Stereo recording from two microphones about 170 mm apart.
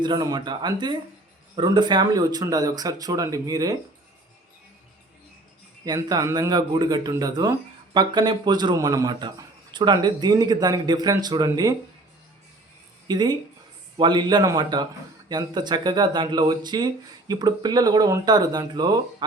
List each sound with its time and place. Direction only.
0.0 s speech: 25° right (ahead or behind)
5.8 s speech: 20° right (ahead or behind)
13.1 s speech: 25° right (ahead or behind)